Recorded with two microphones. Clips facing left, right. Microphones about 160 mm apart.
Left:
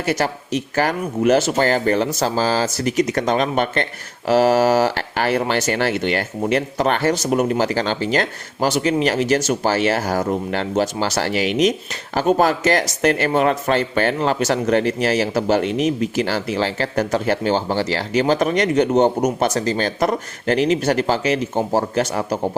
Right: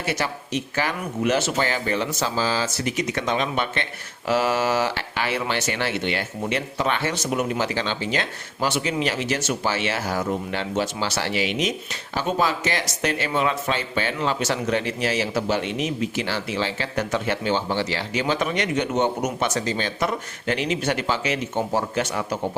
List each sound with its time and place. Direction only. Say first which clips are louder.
0.0 s speech: left 6 dB; 45° left (ahead or behind)